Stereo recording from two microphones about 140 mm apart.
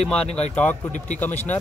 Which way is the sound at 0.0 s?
5° left (ahead or behind).